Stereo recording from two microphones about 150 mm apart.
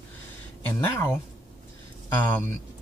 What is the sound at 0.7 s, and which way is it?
Speech, 15° left (ahead or behind).